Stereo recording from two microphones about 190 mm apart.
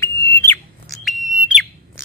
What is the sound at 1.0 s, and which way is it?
Bird, centre (ahead or behind).